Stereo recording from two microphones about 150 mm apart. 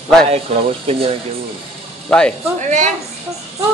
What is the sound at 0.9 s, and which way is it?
Speech, 40° right (ahead or behind).